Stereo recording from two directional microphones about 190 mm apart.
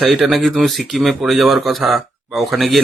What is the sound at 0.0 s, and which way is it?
A man's voice, centre (ahead or behind).